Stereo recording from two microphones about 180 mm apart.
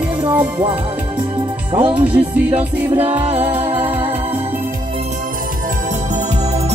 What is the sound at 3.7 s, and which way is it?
Music, 10° right (ahead or behind).